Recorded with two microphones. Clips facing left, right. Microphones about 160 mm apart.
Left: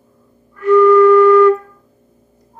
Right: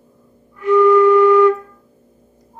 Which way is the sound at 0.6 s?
15° right (ahead or behind).